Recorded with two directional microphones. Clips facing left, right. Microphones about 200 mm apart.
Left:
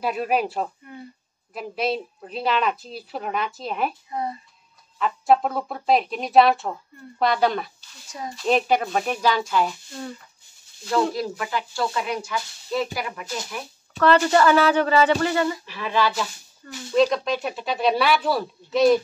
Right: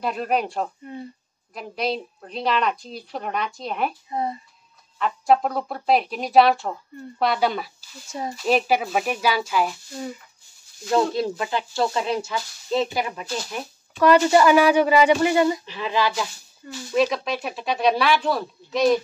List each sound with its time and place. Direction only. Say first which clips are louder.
0.0 s speech: left 1 dB; 5° left (ahead or behind)
4.1 s speech: right 2 dB; 25° right (ahead or behind)
4.9 s speech: even; centre (ahead or behind)
11.1 s speech: right 3 dB; 25° right (ahead or behind)
16.9 s speech: left 2 dB; 5° right (ahead or behind)